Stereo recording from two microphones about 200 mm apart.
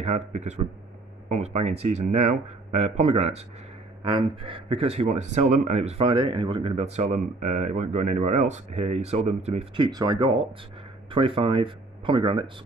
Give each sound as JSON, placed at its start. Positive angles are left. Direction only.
{"t": 0.0, "sound": "speech", "side_deg": -35}